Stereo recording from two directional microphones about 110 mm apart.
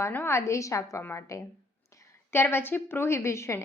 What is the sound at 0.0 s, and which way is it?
Speech, 25° left (ahead or behind).